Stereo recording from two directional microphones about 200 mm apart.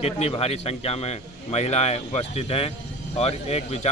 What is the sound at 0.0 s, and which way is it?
A man's voice, 30° left (ahead or behind).